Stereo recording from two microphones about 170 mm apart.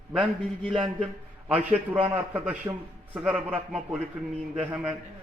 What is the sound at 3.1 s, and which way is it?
Speech, 5° right (ahead or behind).